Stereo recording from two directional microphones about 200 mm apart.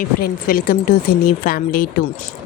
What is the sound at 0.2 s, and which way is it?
Speech, 45° left (ahead or behind).